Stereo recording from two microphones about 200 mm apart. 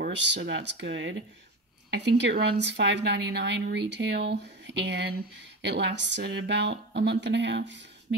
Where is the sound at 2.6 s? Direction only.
60° right (ahead or behind).